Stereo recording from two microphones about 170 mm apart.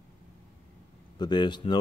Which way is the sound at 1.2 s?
25° left (ahead or behind).